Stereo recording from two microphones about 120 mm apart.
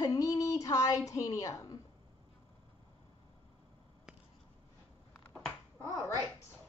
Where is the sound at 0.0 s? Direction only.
30° left (ahead or behind).